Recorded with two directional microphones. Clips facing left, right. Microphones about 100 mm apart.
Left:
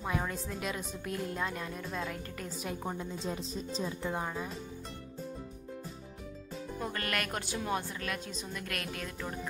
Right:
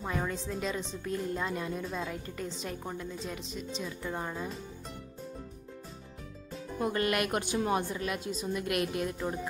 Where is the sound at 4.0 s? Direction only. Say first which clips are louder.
Even; 15° left (ahead or behind).